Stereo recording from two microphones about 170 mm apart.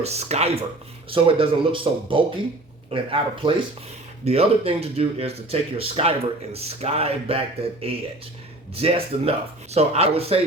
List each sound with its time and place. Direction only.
0.0 s speech: 40° right (ahead or behind)